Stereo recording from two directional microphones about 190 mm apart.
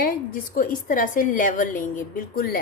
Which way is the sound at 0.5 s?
45° left (ahead or behind).